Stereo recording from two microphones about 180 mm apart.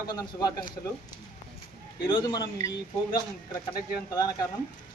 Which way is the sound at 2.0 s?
25° left (ahead or behind).